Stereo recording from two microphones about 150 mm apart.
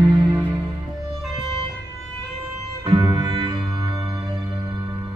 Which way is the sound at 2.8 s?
30° right (ahead or behind).